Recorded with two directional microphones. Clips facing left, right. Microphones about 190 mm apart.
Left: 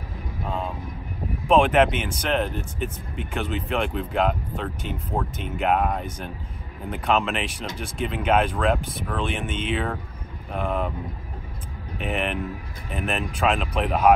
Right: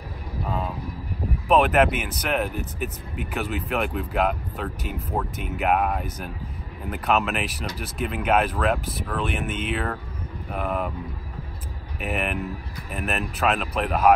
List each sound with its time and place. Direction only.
0.5 s vehicle: 5° right (ahead or behind)
1.5 s speech: 5° right (ahead or behind)
12.0 s speech: 5° right (ahead or behind)